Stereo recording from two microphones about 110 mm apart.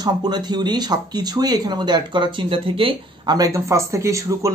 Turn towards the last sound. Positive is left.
turn(degrees=-30)  # may be behind; listen again after turning